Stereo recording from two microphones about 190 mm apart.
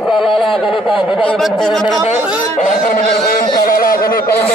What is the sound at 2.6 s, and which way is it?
Speech, 45° left (ahead or behind).